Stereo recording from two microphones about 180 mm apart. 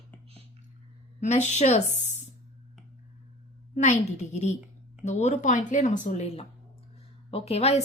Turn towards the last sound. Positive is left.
turn(degrees=35)  # may be behind; listen again after turning